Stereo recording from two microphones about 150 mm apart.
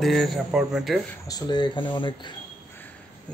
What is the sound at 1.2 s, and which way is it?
Speech, 25° left (ahead or behind).